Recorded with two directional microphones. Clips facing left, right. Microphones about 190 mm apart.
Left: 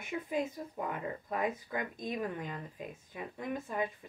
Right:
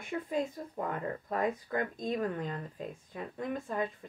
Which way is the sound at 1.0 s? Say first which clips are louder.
Right 2 dB; 40° right (ahead or behind).